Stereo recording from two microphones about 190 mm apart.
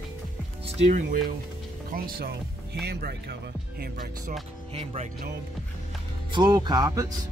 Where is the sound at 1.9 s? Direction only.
50° right (ahead or behind).